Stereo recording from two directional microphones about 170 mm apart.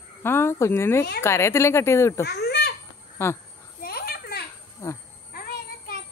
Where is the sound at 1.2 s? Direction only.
15° left (ahead or behind).